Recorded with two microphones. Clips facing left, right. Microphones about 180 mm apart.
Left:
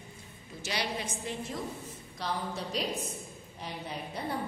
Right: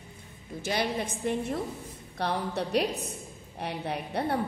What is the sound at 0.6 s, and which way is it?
A woman's voice, 50° right (ahead or behind).